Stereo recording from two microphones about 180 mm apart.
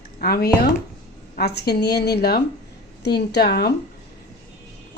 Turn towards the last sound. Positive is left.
turn(degrees=60)  # may be behind; listen again after turning